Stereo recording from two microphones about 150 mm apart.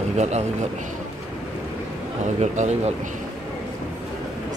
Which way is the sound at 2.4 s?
55° right (ahead or behind).